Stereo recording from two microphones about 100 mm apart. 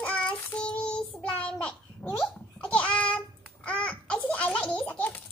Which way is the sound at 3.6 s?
15° left (ahead or behind).